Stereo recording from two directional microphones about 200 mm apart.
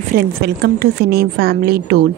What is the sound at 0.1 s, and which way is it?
A woman's voice, 50° right (ahead or behind).